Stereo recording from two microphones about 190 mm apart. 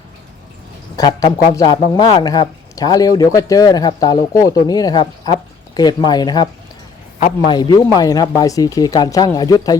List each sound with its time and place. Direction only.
0.9 s speech: 20° left (ahead or behind)
7.2 s a man's voice: 35° left (ahead or behind)
7.5 s speech: 20° left (ahead or behind)